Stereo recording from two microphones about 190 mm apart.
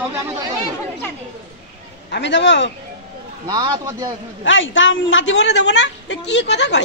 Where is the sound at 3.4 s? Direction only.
20° right (ahead or behind).